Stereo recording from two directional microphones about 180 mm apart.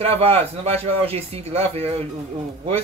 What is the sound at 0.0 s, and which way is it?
Speech, 35° right (ahead or behind).